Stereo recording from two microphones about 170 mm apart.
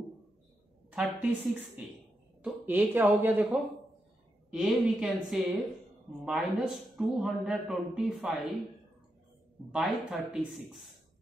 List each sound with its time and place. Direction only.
0.9 s speech: 10° right (ahead or behind)
4.5 s a man's voice: 5° right (ahead or behind)
9.7 s a man's voice: 5° right (ahead or behind)